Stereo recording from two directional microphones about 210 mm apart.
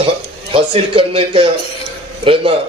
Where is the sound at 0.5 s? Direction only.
25° right (ahead or behind).